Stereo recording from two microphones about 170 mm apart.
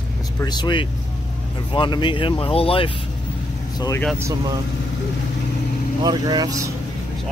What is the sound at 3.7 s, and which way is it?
Speech, 20° left (ahead or behind).